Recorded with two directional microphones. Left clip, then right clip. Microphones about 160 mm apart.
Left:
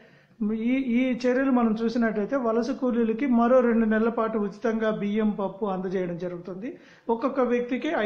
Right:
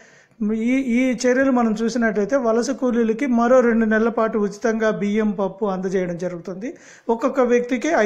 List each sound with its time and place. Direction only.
0.5 s a man's voice: 35° right (ahead or behind)